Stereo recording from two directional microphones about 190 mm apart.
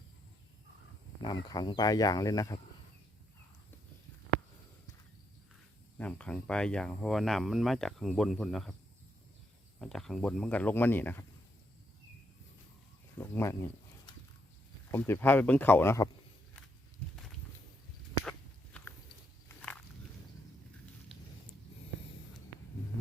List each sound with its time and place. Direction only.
1.2 s speech: 20° left (ahead or behind)
6.0 s speech: 5° left (ahead or behind)
9.7 s speech: centre (ahead or behind)
13.1 s speech: 15° left (ahead or behind)
14.8 s speech: 15° left (ahead or behind)
18.3 s biting: 5° left (ahead or behind)
19.5 s walk: 5° left (ahead or behind)